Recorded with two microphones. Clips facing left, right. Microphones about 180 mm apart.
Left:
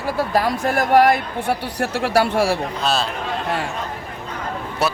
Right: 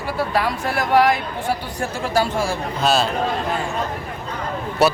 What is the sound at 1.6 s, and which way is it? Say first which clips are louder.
Speech: left 3 dB; 70° left (ahead or behind).